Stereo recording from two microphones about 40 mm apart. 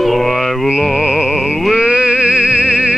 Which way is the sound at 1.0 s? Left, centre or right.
Centre.